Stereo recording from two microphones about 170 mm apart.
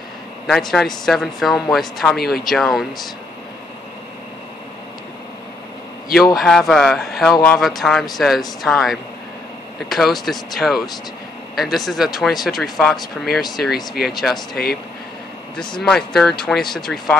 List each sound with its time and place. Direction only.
0.5 s speech: centre (ahead or behind)
6.1 s speech: centre (ahead or behind)
15.8 s speech: centre (ahead or behind)